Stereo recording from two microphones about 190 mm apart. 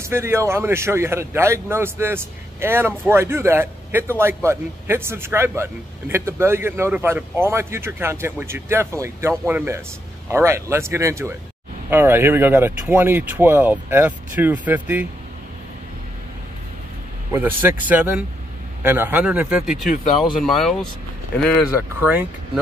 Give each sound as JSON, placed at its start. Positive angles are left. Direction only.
{"t": 0.0, "sound": "speech", "side_deg": -15}
{"t": 17.3, "sound": "speech", "side_deg": -10}